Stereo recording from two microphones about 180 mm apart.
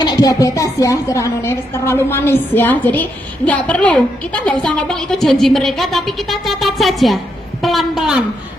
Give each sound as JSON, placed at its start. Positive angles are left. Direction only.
{"t": 0.0, "sound": "a woman's voice", "side_deg": 20}